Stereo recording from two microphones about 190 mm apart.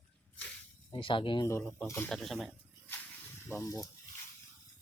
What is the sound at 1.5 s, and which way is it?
Speech, 15° left (ahead or behind).